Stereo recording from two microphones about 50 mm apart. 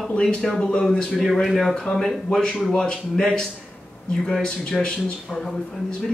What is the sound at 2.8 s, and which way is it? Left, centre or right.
Speech, centre.